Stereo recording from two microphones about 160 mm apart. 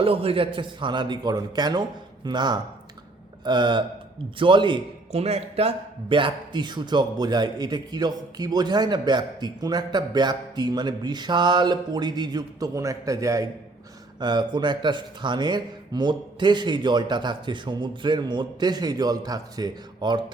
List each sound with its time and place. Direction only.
0.0 s a man's voice: 35° right (ahead or behind)